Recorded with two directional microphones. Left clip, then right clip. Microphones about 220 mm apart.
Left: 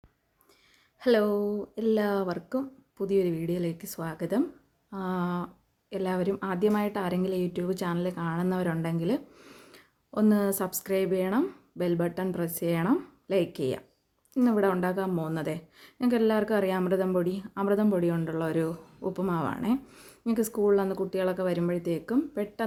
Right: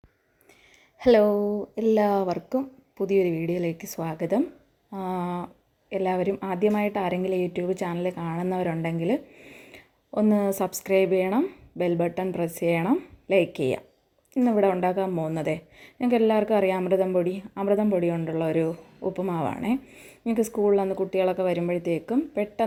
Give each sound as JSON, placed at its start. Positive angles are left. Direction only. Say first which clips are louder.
{"t": 1.2, "sound": "a woman's voice", "louder": "right 5 dB", "side_deg": 5}
{"t": 1.7, "sound": "speech", "louder": "right 4 dB", "side_deg": 20}
{"t": 2.0, "sound": "a woman's voice", "louder": "right 5 dB", "side_deg": 0}
{"t": 14.3, "sound": "a woman's voice", "louder": "right 3 dB", "side_deg": 0}